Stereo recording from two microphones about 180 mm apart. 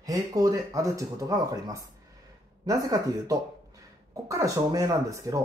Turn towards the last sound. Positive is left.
turn(degrees=-20)  # may be behind; listen again after turning